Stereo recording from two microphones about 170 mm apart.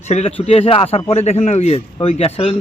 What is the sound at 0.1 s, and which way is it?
A man's voice, 40° left (ahead or behind).